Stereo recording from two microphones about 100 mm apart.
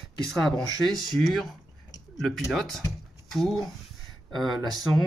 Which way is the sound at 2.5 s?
Centre (ahead or behind).